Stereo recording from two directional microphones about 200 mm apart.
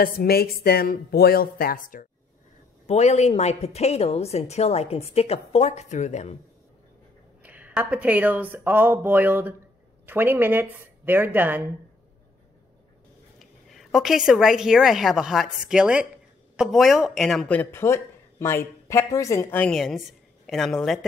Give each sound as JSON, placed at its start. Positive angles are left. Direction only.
{"t": 0.0, "sound": "speech", "side_deg": 50}
{"t": 2.9, "sound": "a woman's voice", "side_deg": 35}
{"t": 7.4, "sound": "speech", "side_deg": -5}
{"t": 13.4, "sound": "a woman's voice", "side_deg": 0}